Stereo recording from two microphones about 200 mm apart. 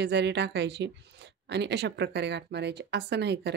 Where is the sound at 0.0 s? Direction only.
60° right (ahead or behind).